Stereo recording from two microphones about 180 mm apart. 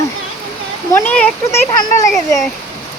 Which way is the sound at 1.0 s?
10° left (ahead or behind).